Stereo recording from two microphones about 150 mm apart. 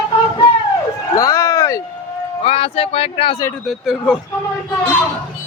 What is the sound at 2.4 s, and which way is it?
Speech, 40° left (ahead or behind).